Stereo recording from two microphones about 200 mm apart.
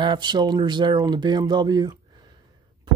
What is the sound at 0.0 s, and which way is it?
Speech, 20° right (ahead or behind).